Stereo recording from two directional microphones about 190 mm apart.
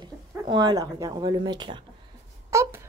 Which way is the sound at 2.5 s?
15° right (ahead or behind).